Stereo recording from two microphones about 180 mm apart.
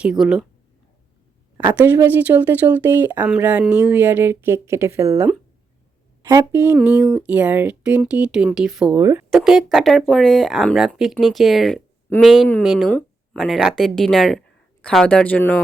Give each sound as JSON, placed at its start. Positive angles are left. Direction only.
{"t": 0.0, "sound": "speech", "side_deg": -5}
{"t": 1.8, "sound": "speech", "side_deg": -10}
{"t": 9.0, "sound": "speech", "side_deg": -20}
{"t": 9.3, "sound": "speech", "side_deg": 0}